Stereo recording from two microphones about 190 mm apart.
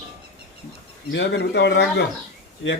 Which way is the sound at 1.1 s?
65° left (ahead or behind).